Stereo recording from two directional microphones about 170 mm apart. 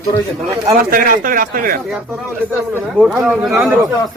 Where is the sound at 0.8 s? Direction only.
55° right (ahead or behind).